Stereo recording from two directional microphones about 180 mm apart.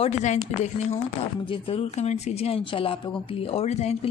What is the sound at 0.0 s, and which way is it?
Speech, 40° left (ahead or behind).